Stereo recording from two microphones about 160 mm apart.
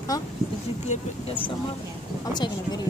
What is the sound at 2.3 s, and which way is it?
Speech, 25° left (ahead or behind).